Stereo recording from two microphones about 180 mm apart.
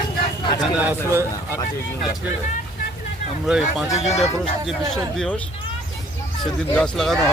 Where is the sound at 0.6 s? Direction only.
10° right (ahead or behind).